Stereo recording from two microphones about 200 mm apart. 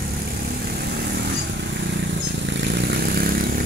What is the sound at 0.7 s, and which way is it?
Vehicle, 55° right (ahead or behind).